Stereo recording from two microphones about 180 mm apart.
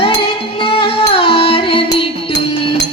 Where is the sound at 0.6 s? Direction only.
30° left (ahead or behind).